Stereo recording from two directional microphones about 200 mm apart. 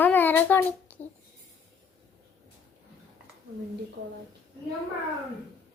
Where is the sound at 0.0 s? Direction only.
10° left (ahead or behind).